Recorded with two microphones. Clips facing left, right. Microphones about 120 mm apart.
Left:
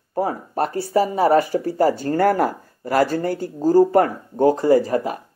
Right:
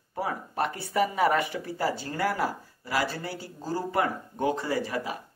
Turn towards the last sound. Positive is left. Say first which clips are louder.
# left 12 dB
turn(degrees=45)  # may be behind; listen again after turning